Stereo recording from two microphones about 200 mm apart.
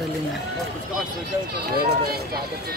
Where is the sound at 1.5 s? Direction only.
50° right (ahead or behind).